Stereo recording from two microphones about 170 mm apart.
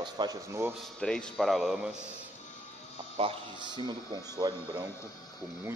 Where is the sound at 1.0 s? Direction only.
5° left (ahead or behind).